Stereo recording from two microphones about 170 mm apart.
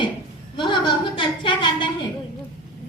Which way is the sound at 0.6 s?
25° left (ahead or behind).